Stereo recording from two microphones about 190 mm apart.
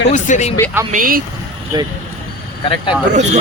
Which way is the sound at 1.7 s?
20° right (ahead or behind).